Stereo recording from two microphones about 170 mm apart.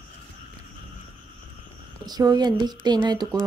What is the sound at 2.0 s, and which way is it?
Speech, 25° right (ahead or behind).